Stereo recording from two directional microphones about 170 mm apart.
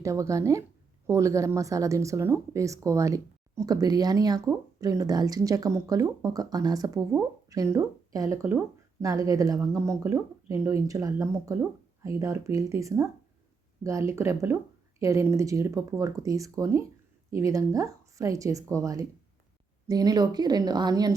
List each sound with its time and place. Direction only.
0.0 s speech: 20° right (ahead or behind)